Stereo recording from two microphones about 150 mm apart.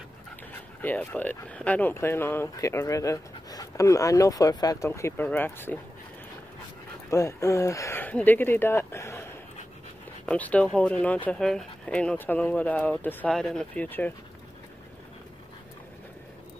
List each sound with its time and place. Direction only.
0.5 s speech: 10° left (ahead or behind)
7.1 s speech: 20° left (ahead or behind)